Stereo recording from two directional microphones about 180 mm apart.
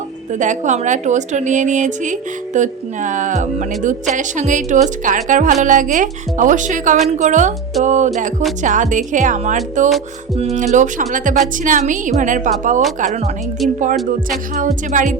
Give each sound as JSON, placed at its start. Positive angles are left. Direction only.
{"t": 0.3, "sound": "a woman's voice", "side_deg": -45}
{"t": 14.3, "sound": "a woman's voice", "side_deg": -45}